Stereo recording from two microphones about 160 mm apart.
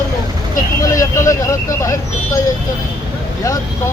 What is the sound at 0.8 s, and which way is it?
Speech, 20° left (ahead or behind).